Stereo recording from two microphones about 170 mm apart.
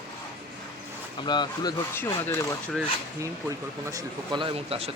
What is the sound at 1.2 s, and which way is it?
Speech, 25° left (ahead or behind).